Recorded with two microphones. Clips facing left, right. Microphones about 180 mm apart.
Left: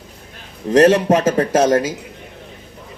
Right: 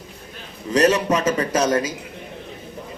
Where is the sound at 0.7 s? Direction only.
50° left (ahead or behind).